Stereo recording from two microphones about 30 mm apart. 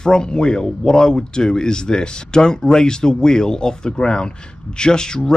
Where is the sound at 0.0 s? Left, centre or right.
Left.